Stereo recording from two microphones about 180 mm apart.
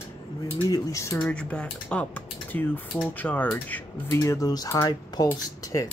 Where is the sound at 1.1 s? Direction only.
5° left (ahead or behind).